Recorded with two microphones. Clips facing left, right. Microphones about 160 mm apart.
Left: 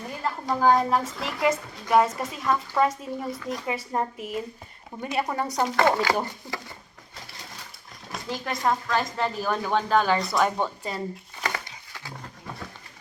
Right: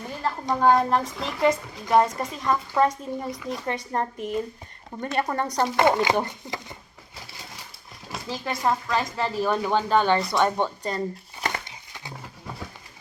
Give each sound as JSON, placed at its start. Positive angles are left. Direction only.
{"t": 0.2, "sound": "a woman's voice", "side_deg": 0}
{"t": 5.7, "sound": "speech", "side_deg": -20}
{"t": 8.1, "sound": "a woman's voice", "side_deg": 0}
{"t": 12.2, "sound": "roaring cats", "side_deg": -5}